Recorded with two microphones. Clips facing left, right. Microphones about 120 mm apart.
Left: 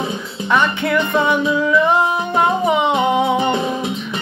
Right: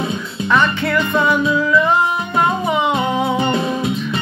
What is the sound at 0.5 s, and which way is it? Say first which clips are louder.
Music: even; 20° left (ahead or behind).